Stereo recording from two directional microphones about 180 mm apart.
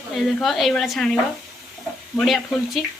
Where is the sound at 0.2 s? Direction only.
Centre (ahead or behind).